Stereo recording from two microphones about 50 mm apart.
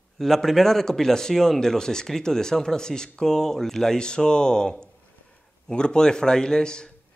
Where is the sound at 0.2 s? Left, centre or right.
Centre.